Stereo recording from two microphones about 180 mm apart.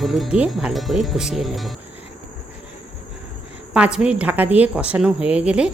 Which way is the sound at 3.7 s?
5° right (ahead or behind).